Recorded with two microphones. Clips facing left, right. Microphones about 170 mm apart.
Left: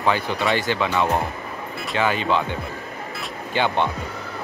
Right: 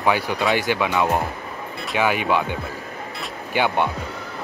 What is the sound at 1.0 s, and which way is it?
Speech, centre (ahead or behind).